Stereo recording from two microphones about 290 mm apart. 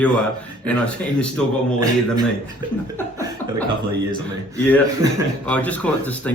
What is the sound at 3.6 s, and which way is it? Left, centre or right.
Speech, centre.